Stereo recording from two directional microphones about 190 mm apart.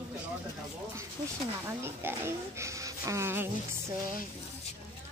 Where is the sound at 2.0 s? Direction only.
15° right (ahead or behind).